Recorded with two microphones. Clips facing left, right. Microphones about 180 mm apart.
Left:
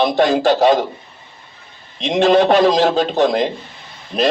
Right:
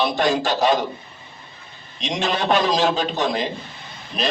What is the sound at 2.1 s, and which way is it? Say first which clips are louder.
Speech: left 9 dB; 60° left (ahead or behind).